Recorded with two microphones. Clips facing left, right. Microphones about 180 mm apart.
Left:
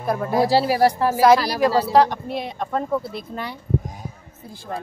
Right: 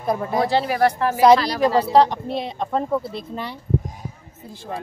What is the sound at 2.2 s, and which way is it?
Speech, 30° right (ahead or behind).